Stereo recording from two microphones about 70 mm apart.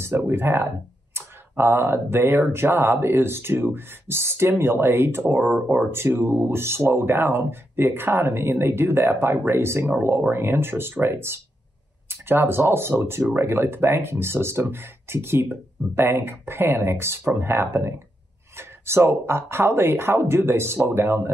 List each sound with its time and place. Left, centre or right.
0.3 s speech: right